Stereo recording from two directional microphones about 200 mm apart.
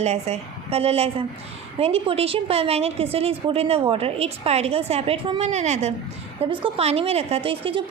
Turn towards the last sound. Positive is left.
turn(degrees=-25)  # may be behind; listen again after turning